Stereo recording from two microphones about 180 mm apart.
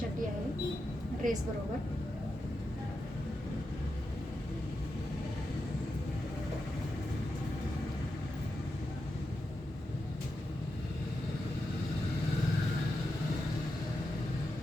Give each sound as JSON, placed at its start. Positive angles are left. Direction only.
{"t": 1.2, "sound": "a woman's voice", "side_deg": -45}